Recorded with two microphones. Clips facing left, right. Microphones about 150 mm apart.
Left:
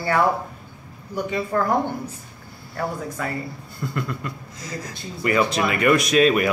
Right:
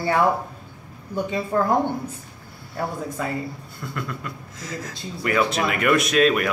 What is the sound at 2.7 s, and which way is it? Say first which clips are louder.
Speech: even; 20° right (ahead or behind).